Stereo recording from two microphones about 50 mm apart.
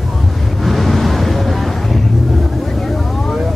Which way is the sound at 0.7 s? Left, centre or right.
Centre.